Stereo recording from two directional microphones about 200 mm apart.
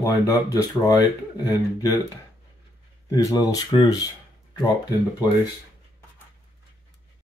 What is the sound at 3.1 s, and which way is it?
Speech, 20° left (ahead or behind).